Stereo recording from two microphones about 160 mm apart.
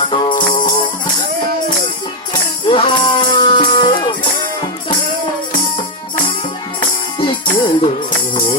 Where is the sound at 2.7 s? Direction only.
35° left (ahead or behind).